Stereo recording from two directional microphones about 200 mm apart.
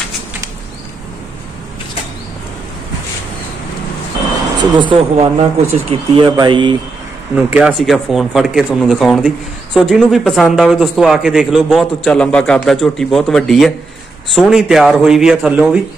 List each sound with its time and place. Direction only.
4.7 s a man's voice: 25° right (ahead or behind)
7.3 s speech: 5° right (ahead or behind)